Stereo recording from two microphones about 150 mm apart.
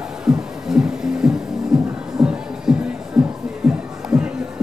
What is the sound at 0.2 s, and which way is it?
Music, 5° right (ahead or behind).